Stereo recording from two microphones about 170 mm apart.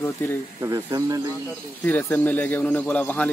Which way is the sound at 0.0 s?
15° left (ahead or behind).